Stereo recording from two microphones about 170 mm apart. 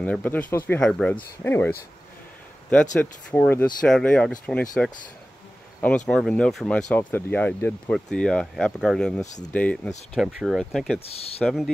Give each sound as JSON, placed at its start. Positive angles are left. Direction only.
{"t": 0.0, "sound": "speech", "side_deg": 10}
{"t": 2.7, "sound": "speech", "side_deg": 5}
{"t": 10.1, "sound": "speech", "side_deg": 0}